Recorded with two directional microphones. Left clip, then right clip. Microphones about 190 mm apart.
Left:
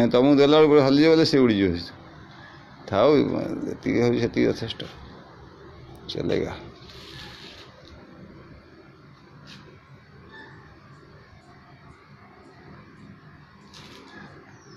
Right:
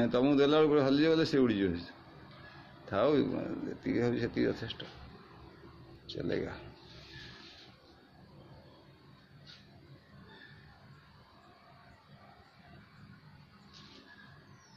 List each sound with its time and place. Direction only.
0.0 s speech: 20° left (ahead or behind)
6.0 s speech: 15° left (ahead or behind)